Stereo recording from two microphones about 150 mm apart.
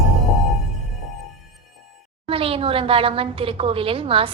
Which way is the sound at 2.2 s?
40° right (ahead or behind).